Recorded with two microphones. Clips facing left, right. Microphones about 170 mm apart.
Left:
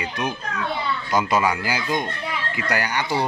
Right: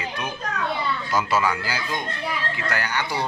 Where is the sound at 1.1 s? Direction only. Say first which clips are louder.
Left 3 dB; 15° left (ahead or behind).